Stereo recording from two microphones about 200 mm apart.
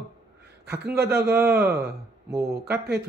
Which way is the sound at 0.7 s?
55° right (ahead or behind).